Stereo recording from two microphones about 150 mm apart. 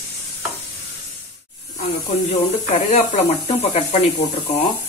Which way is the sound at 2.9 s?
45° left (ahead or behind).